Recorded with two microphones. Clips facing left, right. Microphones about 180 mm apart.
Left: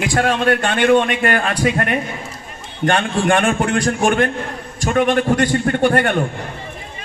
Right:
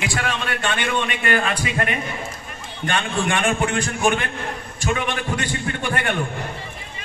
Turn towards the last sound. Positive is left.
turn(degrees=45)  # may be behind; listen again after turning